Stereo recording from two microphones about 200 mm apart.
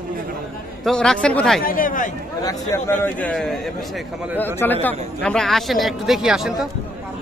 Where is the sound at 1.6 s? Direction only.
45° left (ahead or behind).